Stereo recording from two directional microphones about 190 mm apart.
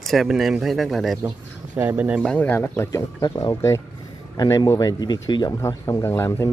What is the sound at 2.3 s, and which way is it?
Speech, 10° left (ahead or behind).